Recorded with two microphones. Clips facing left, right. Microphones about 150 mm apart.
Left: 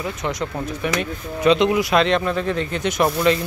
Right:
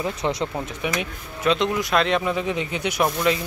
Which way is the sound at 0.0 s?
30° right (ahead or behind).